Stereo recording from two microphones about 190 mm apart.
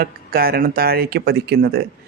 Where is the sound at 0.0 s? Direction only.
50° right (ahead or behind).